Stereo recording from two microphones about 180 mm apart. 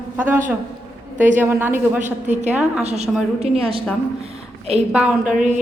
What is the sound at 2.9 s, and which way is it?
Speech, 35° right (ahead or behind).